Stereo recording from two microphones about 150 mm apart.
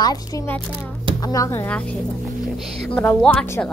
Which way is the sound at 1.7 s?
10° left (ahead or behind).